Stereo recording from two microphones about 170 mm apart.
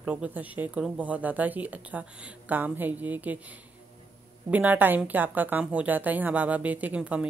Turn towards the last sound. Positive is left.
turn(degrees=-10)  # may be behind; listen again after turning